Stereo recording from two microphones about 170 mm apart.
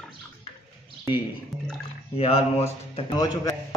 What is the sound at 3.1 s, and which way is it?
Speech, 25° left (ahead or behind).